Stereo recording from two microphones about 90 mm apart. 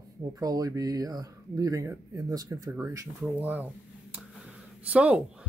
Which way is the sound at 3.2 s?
20° right (ahead or behind).